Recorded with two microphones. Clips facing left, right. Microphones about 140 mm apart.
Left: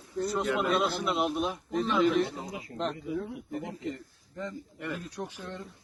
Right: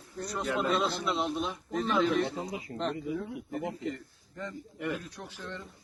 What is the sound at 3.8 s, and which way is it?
A man's voice, centre (ahead or behind).